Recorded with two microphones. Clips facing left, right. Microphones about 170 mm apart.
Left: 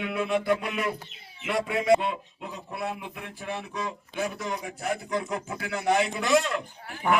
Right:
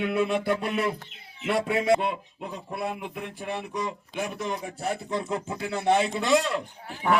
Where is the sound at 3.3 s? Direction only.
20° right (ahead or behind).